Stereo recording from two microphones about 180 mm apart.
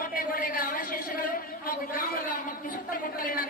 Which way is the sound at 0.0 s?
50° left (ahead or behind).